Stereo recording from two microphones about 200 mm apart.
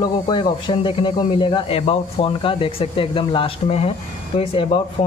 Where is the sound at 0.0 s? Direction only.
25° left (ahead or behind).